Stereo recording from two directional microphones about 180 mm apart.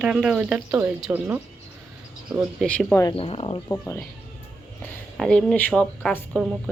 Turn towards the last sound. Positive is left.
turn(degrees=0)  # may be behind; listen again after turning